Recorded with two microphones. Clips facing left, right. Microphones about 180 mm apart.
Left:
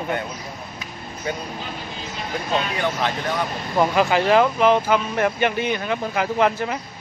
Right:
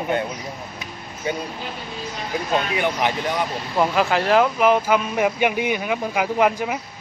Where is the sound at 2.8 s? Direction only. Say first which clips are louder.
Right 2 dB; 15° right (ahead or behind).